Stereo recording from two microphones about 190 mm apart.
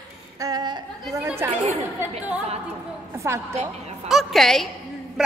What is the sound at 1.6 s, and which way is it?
Chatter, 35° right (ahead or behind).